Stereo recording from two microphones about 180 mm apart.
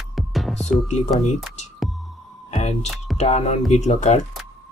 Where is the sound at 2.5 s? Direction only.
40° left (ahead or behind).